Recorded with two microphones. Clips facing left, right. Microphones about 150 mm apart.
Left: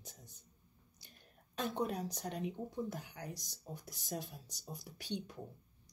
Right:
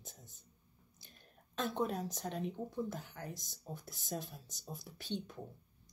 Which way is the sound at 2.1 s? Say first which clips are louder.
Right 1 dB; 15° left (ahead or behind).